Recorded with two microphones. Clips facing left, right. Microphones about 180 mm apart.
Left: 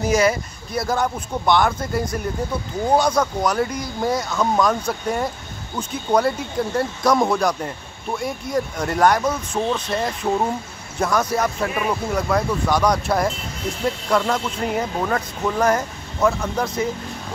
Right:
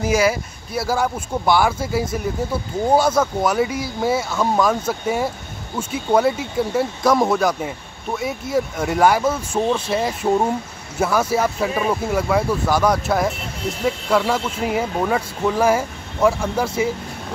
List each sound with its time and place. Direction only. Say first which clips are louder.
0.0 s speech: even; 5° right (ahead or behind)